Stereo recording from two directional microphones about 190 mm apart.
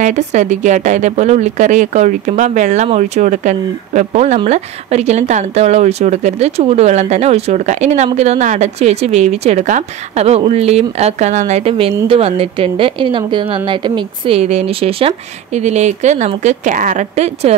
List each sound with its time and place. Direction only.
0.0 s a woman's voice: 40° right (ahead or behind)